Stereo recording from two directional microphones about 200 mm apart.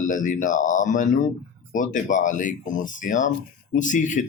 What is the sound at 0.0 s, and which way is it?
Speech, 40° left (ahead or behind).